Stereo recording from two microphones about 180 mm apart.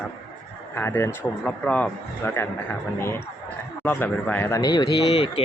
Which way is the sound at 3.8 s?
10° left (ahead or behind).